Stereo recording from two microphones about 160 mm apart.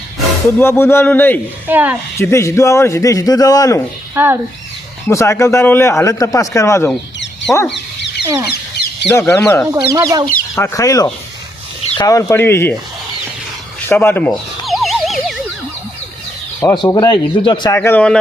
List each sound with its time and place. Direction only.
0.4 s a man's voice: 15° left (ahead or behind)
1.6 s speech: 10° right (ahead or behind)
2.1 s a man's voice: 20° left (ahead or behind)
4.1 s speech: 15° right (ahead or behind)
5.0 s a man's voice: 15° left (ahead or behind)
7.5 s wild animals: centre (ahead or behind)
9.0 s a man's voice: 15° left (ahead or behind)
9.7 s speech: 25° right (ahead or behind)
10.5 s a man's voice: 20° left (ahead or behind)
13.8 s a man's voice: 15° left (ahead or behind)
14.3 s a sound: centre (ahead or behind)
16.6 s a man's voice: 20° left (ahead or behind)
17.7 s a man's voice: 10° left (ahead or behind)